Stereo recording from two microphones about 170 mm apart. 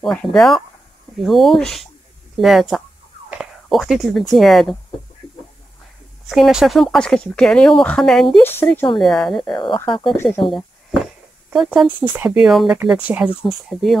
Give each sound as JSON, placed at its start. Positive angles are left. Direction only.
{"t": 0.0, "sound": "speech", "side_deg": 0}
{"t": 3.3, "sound": "whispering", "side_deg": 0}
{"t": 4.3, "sound": "speech", "side_deg": 0}
{"t": 6.2, "sound": "speech", "side_deg": 0}
{"t": 8.4, "sound": "speech", "side_deg": 10}
{"t": 8.9, "sound": "speech", "side_deg": 0}
{"t": 10.1, "sound": "speech", "side_deg": 15}
{"t": 10.4, "sound": "a sound", "side_deg": 0}
{"t": 11.5, "sound": "speech", "side_deg": 0}